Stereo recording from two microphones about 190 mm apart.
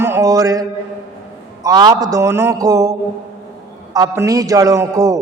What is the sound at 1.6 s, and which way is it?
Speech, 20° right (ahead or behind).